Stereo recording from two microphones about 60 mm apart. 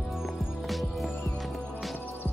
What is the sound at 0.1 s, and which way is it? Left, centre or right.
Music, centre.